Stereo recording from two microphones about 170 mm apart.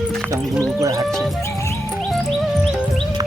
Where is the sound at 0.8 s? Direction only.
20° right (ahead or behind).